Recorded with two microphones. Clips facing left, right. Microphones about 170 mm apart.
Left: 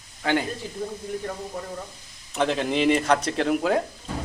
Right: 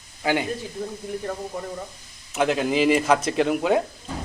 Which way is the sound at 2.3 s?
5° right (ahead or behind).